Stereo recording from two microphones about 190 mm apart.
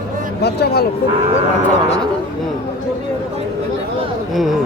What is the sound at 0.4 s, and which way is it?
Speech, 55° left (ahead or behind).